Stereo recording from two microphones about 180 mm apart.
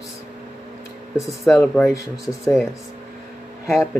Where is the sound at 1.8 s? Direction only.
20° left (ahead or behind).